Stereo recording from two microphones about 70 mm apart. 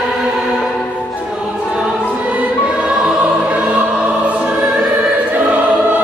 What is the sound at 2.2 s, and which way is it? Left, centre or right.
Music, centre.